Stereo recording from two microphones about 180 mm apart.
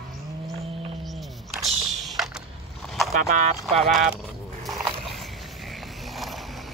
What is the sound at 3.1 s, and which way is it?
Speech, 40° right (ahead or behind).